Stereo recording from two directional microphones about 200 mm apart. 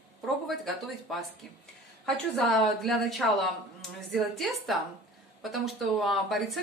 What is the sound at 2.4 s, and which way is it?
Speech, centre (ahead or behind).